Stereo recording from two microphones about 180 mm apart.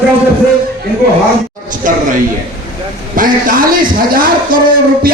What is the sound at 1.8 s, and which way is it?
Speech, 45° right (ahead or behind).